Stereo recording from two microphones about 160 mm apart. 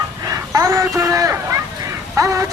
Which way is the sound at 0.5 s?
20° right (ahead or behind).